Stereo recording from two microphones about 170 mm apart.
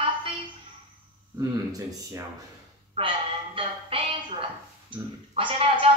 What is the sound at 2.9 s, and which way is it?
Speech, 30° right (ahead or behind).